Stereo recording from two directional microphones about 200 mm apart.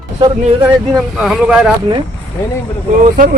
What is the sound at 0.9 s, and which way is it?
Speech, centre (ahead or behind).